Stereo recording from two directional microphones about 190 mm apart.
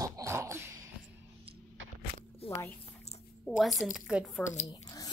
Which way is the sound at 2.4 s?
30° left (ahead or behind).